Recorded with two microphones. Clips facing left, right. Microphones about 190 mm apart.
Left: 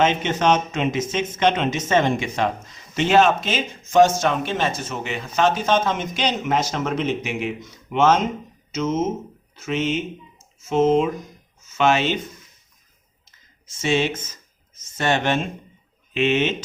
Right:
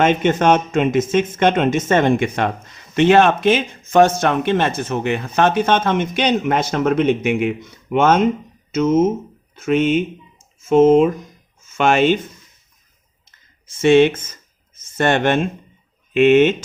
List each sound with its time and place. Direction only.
0.0 s speech: 50° right (ahead or behind)
13.7 s speech: 55° right (ahead or behind)